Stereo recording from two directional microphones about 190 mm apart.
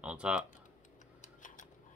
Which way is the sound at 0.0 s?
5° right (ahead or behind).